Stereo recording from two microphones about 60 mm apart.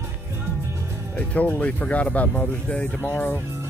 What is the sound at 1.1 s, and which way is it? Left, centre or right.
Speech, left.